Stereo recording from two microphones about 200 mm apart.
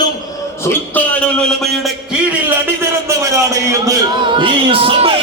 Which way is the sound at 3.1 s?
15° right (ahead or behind).